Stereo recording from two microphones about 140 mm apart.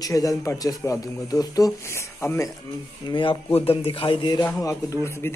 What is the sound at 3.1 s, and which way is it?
Speech, 35° left (ahead or behind).